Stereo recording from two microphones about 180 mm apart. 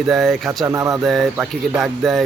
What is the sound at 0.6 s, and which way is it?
Speech, 20° right (ahead or behind).